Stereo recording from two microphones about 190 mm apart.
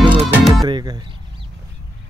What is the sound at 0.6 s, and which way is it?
Speech, 20° right (ahead or behind).